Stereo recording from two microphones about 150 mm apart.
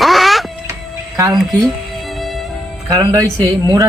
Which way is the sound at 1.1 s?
25° right (ahead or behind).